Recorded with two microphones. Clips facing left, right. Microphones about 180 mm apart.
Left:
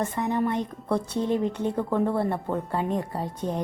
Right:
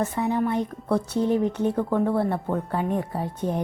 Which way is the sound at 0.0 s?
10° right (ahead or behind).